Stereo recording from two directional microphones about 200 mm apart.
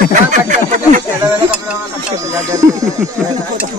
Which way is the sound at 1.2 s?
5° right (ahead or behind).